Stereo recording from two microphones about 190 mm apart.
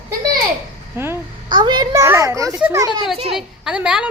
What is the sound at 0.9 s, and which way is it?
Speech, 15° right (ahead or behind).